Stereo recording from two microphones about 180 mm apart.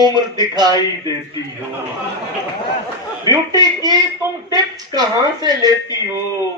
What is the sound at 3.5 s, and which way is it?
Speech, 20° right (ahead or behind).